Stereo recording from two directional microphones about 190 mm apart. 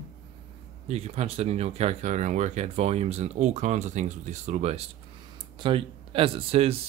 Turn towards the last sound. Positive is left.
turn(degrees=-30)  # may be behind; listen again after turning